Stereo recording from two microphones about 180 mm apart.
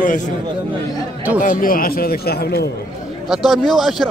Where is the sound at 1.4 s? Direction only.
50° left (ahead or behind).